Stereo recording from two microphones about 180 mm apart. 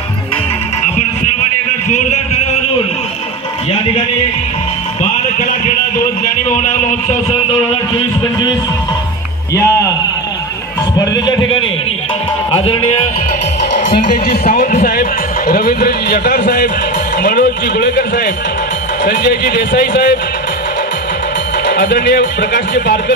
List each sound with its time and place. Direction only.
1.9 s a sound: 40° left (ahead or behind)
5.0 s a sound: 50° left (ahead or behind)
9.5 s speech: 20° left (ahead or behind)
11.1 s speech: 25° left (ahead or behind)
12.5 s speech: 35° left (ahead or behind)
13.9 s speech: 30° left (ahead or behind)
14.4 s a man's voice: 45° left (ahead or behind)
17.2 s music: 50° left (ahead or behind)
17.7 s a man's voice: 60° left (ahead or behind)
21.6 s a man's voice: 75° left (ahead or behind)